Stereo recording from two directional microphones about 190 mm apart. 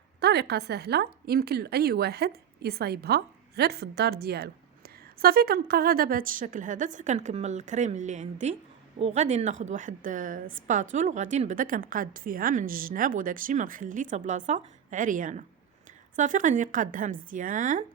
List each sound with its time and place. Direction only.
0.2 s a woman's voice: 60° right (ahead or behind); by 17.8 s 45° right (ahead or behind)